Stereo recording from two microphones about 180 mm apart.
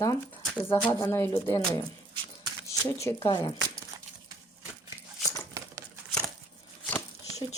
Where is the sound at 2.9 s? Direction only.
15° left (ahead or behind).